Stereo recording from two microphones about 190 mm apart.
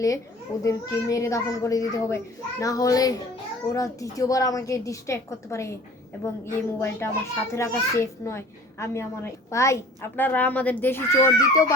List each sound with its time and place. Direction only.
0.6 s a child's voice: 15° left (ahead or behind)